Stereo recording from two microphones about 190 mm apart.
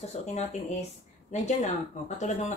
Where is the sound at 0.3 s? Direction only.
35° left (ahead or behind).